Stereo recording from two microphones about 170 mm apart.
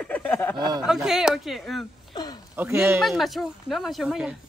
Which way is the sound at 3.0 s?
Centre (ahead or behind).